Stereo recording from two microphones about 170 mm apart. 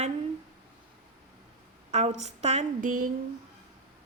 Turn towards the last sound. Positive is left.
turn(degrees=-55)  # may be behind; listen again after turning